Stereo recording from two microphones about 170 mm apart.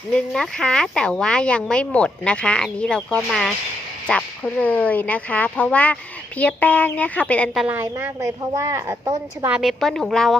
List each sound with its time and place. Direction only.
0.2 s speech: 5° left (ahead or behind)
7.6 s a woman's voice: 10° right (ahead or behind)
9.6 s speech: centre (ahead or behind)